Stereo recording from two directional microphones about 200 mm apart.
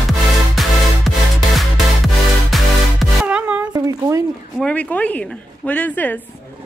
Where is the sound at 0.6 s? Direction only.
Centre (ahead or behind).